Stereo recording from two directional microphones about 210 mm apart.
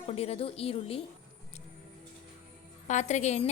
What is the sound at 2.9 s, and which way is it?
Speech, 35° left (ahead or behind).